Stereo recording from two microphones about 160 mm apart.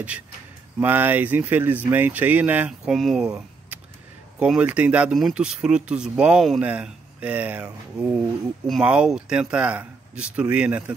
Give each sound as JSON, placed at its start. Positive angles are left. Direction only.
{"t": 0.7, "sound": "speech", "side_deg": -10}